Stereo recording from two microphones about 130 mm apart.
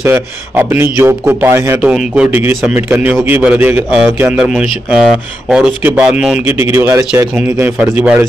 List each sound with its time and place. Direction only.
0.0 s a man's voice: 15° right (ahead or behind)
1.8 s speech: 10° right (ahead or behind)